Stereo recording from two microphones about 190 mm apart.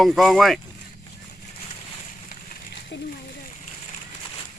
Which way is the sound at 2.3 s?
50° left (ahead or behind).